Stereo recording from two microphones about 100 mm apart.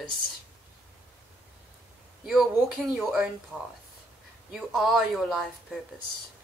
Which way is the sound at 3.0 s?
5° right (ahead or behind).